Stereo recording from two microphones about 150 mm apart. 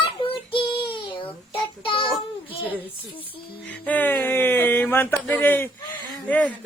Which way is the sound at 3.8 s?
10° left (ahead or behind).